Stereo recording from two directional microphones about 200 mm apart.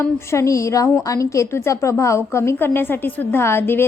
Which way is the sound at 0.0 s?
15° left (ahead or behind).